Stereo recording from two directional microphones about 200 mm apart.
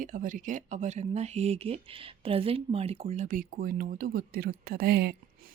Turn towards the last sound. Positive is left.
turn(degrees=-50)  # may be behind; listen again after turning